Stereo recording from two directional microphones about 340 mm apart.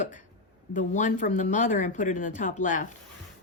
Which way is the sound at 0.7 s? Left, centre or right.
Left.